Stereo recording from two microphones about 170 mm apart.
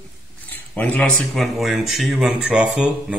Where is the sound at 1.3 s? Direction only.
Centre (ahead or behind).